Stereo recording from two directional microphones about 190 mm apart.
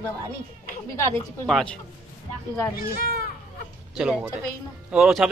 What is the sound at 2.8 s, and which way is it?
Speech, 50° left (ahead or behind).